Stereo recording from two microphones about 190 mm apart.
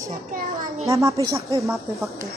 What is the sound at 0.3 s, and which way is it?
Speech, 50° right (ahead or behind).